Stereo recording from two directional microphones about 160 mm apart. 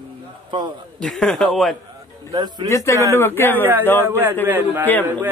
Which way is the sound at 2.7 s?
20° left (ahead or behind).